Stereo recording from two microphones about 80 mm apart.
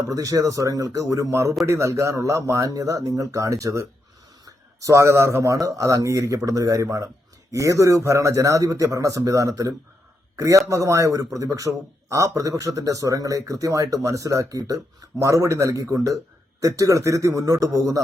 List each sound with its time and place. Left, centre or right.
0.1 s a man's voice: right